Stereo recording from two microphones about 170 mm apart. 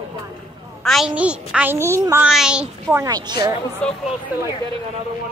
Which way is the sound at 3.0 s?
20° right (ahead or behind).